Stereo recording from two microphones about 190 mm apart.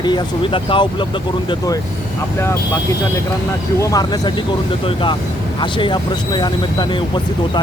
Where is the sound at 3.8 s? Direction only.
20° left (ahead or behind).